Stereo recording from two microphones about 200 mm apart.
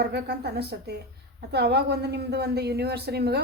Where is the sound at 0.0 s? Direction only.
55° right (ahead or behind).